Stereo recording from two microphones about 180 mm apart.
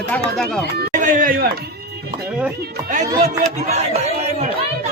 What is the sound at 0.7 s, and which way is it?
Speech, 50° right (ahead or behind).